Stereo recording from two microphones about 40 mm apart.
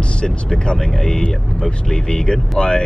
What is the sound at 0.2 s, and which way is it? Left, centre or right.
Speech, left.